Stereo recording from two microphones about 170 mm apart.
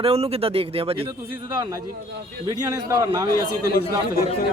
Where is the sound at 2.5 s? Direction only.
20° right (ahead or behind).